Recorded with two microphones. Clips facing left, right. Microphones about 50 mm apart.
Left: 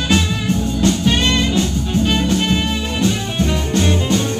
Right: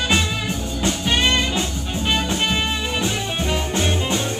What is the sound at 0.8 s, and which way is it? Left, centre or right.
Music, centre.